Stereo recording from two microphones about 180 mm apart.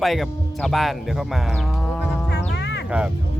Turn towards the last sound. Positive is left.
turn(degrees=-5)  # may be behind; listen again after turning